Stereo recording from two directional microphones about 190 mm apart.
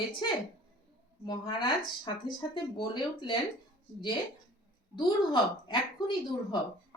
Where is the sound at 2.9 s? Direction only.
25° left (ahead or behind).